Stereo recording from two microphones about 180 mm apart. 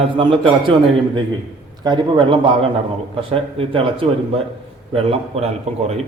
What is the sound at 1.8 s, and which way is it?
A man's voice, 25° right (ahead or behind).